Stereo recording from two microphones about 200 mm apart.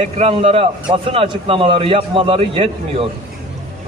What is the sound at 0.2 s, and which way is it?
A man's voice, 30° right (ahead or behind).